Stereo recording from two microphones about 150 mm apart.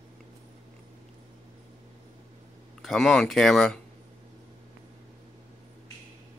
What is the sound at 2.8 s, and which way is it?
Speech, 5° left (ahead or behind).